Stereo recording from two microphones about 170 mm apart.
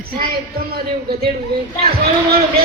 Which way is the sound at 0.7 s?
65° right (ahead or behind).